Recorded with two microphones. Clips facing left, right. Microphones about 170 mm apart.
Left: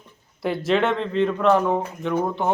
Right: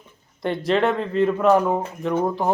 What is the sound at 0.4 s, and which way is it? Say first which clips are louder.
Speech: right 1 dB; centre (ahead or behind).